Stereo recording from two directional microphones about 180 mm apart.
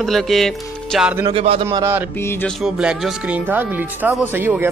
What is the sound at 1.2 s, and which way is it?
Speech, 30° right (ahead or behind).